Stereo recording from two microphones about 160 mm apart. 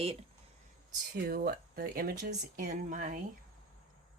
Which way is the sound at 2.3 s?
50° right (ahead or behind).